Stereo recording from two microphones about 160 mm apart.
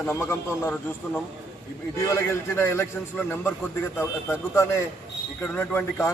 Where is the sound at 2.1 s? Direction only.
15° left (ahead or behind).